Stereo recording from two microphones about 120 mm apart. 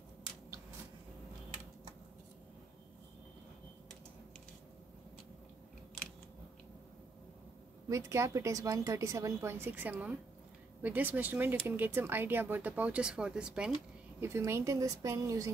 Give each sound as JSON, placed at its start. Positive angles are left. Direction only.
{"t": 7.9, "sound": "a woman's voice", "side_deg": -25}
{"t": 14.2, "sound": "a woman's voice", "side_deg": -25}